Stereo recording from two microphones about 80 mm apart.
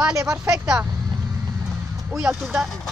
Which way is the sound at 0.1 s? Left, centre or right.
Right.